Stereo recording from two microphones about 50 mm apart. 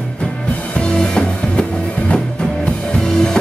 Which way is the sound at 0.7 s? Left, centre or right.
Left.